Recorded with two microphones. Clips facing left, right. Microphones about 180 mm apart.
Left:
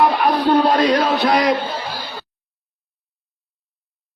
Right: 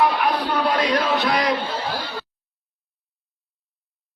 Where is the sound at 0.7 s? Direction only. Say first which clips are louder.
Left 5 dB; 40° left (ahead or behind).